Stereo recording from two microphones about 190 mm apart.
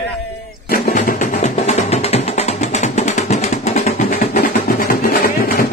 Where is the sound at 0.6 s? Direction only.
55° left (ahead or behind); by 4.4 s 35° left (ahead or behind).